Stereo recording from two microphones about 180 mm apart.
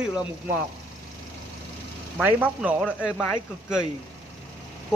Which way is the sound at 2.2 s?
10° right (ahead or behind).